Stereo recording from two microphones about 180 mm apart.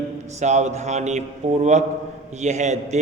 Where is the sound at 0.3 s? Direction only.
40° right (ahead or behind).